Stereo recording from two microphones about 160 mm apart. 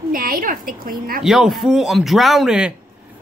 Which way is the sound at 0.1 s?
65° right (ahead or behind).